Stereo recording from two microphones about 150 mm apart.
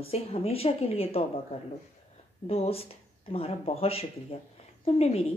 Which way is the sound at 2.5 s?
40° left (ahead or behind).